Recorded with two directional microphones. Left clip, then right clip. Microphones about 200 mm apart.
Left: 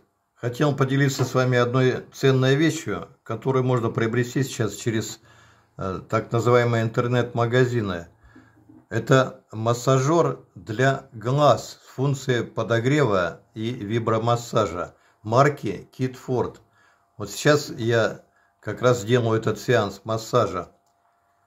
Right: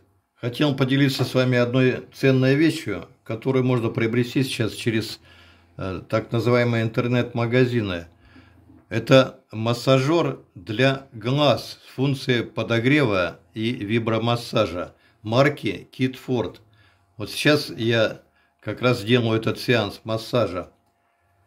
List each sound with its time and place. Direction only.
0.4 s speech: 15° right (ahead or behind)
9.7 s speech: 30° right (ahead or behind)
10.2 s speech: 10° right (ahead or behind)